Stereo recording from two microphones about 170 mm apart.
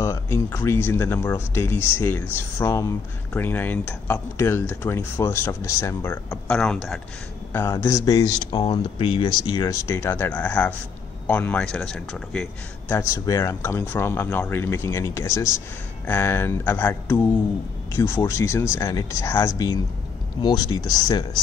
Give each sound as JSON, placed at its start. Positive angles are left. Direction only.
{"t": 0.0, "sound": "speech", "side_deg": 15}
{"t": 6.4, "sound": "speech", "side_deg": 5}
{"t": 7.5, "sound": "speech", "side_deg": 15}